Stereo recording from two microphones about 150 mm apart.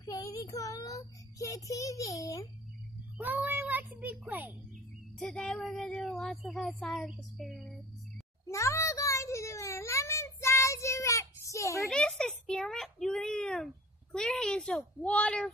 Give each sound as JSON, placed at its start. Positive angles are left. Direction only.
{"t": 0.0, "sound": "a child's voice", "side_deg": 25}
{"t": 3.2, "sound": "speech", "side_deg": -10}
{"t": 5.2, "sound": "speech", "side_deg": 5}
{"t": 8.5, "sound": "a sound", "side_deg": 20}
{"t": 11.9, "sound": "speech", "side_deg": 5}